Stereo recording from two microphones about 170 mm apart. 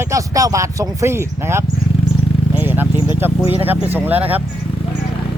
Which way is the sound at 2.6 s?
10° right (ahead or behind).